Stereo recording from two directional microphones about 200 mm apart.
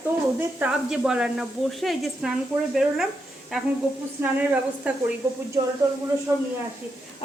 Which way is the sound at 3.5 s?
5° right (ahead or behind).